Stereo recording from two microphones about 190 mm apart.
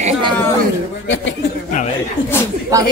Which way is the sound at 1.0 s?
80° left.